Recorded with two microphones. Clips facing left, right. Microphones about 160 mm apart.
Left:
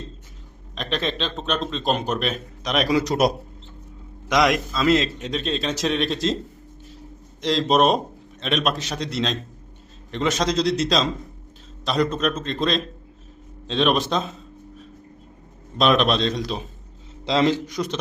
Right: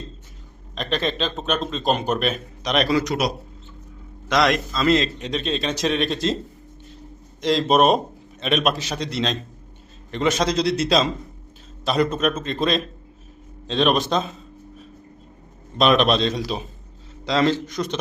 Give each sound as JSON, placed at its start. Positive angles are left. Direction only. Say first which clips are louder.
{"t": 0.8, "sound": "speech", "louder": "right 2 dB", "side_deg": 0}
{"t": 4.3, "sound": "speech", "louder": "even", "side_deg": 15}
{"t": 7.4, "sound": "speech", "louder": "right 1 dB", "side_deg": 0}
{"t": 15.8, "sound": "speech", "louder": "right 1 dB", "side_deg": 0}
{"t": 17.2, "sound": "a man's voice", "louder": "even", "side_deg": 20}